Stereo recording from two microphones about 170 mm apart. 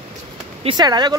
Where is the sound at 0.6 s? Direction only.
25° right (ahead or behind).